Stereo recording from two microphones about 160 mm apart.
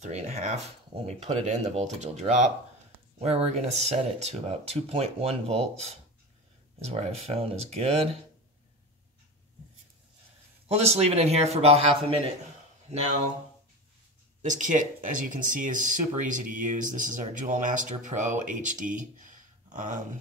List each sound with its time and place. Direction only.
0.0 s speech: 45° right (ahead or behind)
10.7 s speech: 40° right (ahead or behind)
12.9 s speech: 45° right (ahead or behind)
14.4 s speech: 50° right (ahead or behind)